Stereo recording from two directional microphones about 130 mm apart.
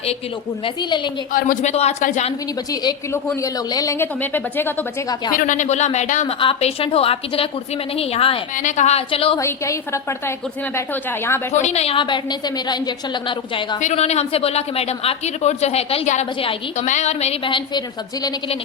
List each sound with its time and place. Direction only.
0.6 s a woman's voice: 35° left (ahead or behind)
1.3 s speech: 90° left
1.7 s speech: 55° left (ahead or behind)
3.4 s a woman's voice: 25° left (ahead or behind)
5.3 s speech: 85° left; by 6.2 s 65° left (ahead or behind)
6.2 s a woman's voice: 45° left (ahead or behind)
8.5 s speech: 70° left (ahead or behind); by 9.4 s 45° left (ahead or behind)
9.4 s a woman's voice: 20° left (ahead or behind)
11.5 s a woman's voice: 60° left (ahead or behind); by 13.7 s 35° left (ahead or behind)
13.8 s speech: 55° left (ahead or behind)
16.7 s speech: 65° left (ahead or behind)
17.4 s a woman's voice: 35° left (ahead or behind)